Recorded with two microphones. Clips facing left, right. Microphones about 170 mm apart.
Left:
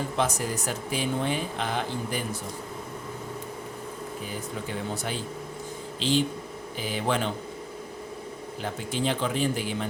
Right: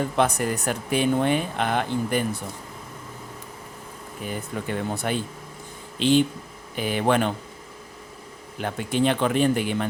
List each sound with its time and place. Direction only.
0.2 s speech: 60° right (ahead or behind)
4.3 s speech: 60° right (ahead or behind)
8.6 s speech: 60° right (ahead or behind)